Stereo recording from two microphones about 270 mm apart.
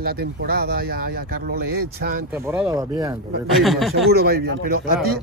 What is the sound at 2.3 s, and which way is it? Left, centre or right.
Speech, centre.